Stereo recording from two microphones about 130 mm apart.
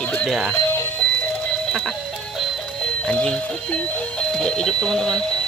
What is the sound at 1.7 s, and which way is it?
Music, centre (ahead or behind).